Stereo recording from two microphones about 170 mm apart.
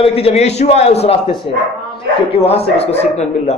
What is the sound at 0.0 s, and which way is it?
A man's voice, 35° left (ahead or behind).